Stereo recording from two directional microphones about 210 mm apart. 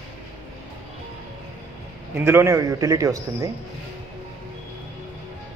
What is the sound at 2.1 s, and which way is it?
A man's voice, 10° right (ahead or behind).